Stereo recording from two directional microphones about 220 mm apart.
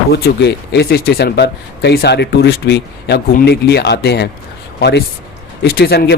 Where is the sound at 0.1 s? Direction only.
50° left (ahead or behind).